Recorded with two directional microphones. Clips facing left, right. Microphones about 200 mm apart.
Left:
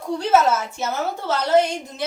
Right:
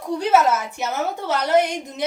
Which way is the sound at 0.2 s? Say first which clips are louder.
Even; 15° right (ahead or behind).